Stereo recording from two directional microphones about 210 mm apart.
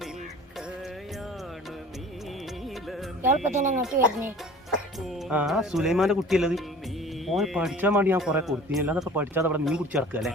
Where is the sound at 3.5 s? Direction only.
35° right (ahead or behind).